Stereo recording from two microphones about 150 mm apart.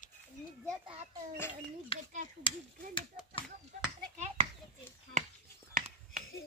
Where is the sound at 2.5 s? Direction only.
35° left (ahead or behind).